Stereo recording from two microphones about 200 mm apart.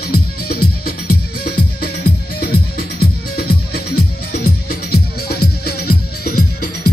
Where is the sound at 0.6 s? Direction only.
90° left.